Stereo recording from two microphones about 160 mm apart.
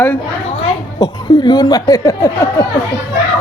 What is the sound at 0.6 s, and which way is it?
A woman's voice, 25° left (ahead or behind).